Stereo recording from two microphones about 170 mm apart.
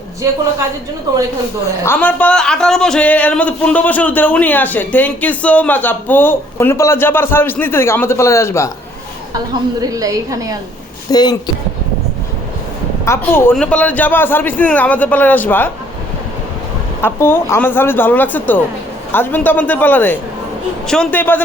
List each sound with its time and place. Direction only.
1.6 s a woman's voice: 15° left (ahead or behind)
9.8 s a woman's voice: 20° right (ahead or behind)
11.1 s speech: 25° left (ahead or behind)
13.1 s a woman's voice: 15° left (ahead or behind)
17.0 s a woman's voice: 15° left (ahead or behind)